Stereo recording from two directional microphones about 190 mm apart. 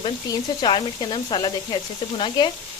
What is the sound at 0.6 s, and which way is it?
Speech, 25° left (ahead or behind).